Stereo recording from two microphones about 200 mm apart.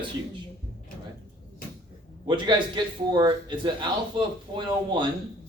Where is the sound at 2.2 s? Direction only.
25° right (ahead or behind).